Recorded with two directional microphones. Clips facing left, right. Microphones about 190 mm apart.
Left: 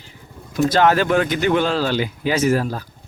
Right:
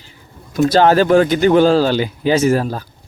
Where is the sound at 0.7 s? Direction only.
30° right (ahead or behind).